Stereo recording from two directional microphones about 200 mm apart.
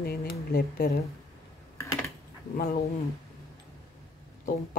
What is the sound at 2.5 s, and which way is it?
Speech, 45° left (ahead or behind).